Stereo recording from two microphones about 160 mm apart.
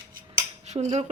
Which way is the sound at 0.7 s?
30° right (ahead or behind).